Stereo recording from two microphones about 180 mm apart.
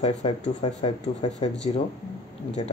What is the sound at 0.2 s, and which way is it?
Speech, 30° left (ahead or behind).